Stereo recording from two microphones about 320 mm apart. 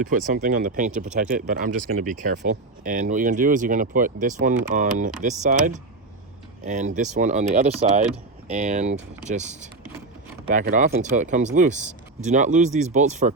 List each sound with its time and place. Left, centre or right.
0.0 s speech: right